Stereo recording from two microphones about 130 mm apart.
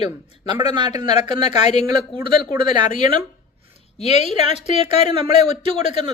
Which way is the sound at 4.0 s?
55° left (ahead or behind).